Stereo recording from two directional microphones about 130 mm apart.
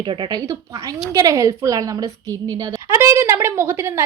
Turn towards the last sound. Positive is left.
turn(degrees=-20)  # may be behind; listen again after turning